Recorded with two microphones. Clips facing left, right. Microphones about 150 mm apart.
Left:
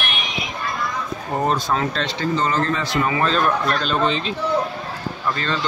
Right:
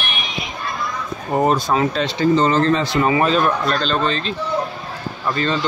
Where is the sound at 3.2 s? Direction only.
10° right (ahead or behind).